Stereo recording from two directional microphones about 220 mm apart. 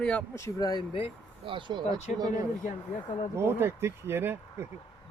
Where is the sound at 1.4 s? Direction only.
20° right (ahead or behind).